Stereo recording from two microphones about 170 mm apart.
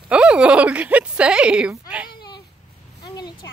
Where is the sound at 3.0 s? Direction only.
25° left (ahead or behind).